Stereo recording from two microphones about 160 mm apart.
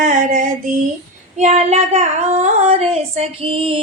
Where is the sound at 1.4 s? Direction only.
45° right (ahead or behind).